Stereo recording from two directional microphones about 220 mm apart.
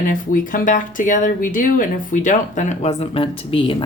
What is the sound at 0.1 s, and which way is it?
Speech, 35° left (ahead or behind).